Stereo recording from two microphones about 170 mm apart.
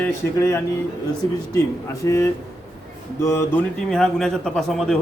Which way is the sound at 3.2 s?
15° left (ahead or behind).